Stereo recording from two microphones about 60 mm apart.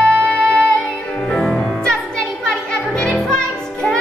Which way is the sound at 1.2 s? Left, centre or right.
Centre.